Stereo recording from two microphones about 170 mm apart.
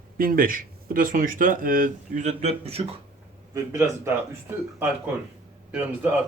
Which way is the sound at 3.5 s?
15° right (ahead or behind).